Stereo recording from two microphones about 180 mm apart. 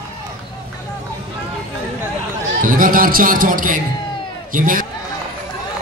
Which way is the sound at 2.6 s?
50° right (ahead or behind).